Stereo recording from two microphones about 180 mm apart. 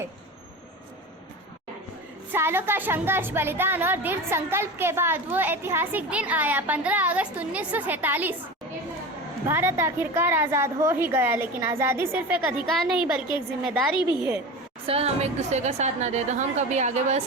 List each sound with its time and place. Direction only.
2.3 s a woman's voice: 10° right (ahead or behind)
9.5 s a woman's voice: 15° right (ahead or behind)
12.7 s a woman's voice: centre (ahead or behind)
13.9 s a woman's voice: 25° left (ahead or behind)
14.8 s a woman's voice: 35° right (ahead or behind)